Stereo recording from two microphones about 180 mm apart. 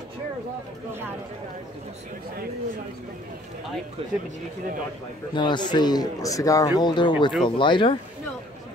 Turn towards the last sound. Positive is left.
turn(degrees=25)  # may be behind; listen again after turning